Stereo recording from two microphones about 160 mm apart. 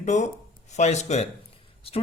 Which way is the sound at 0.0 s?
50° left (ahead or behind).